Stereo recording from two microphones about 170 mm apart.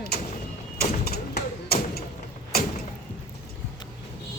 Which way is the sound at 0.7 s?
65° left (ahead or behind).